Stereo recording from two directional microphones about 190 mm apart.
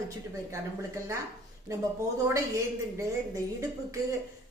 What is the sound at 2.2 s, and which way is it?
Speech, 15° right (ahead or behind).